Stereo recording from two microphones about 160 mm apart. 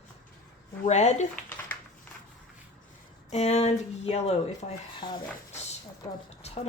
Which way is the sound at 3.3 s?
40° left (ahead or behind).